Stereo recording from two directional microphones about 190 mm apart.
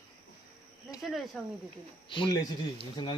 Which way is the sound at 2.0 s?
25° left (ahead or behind).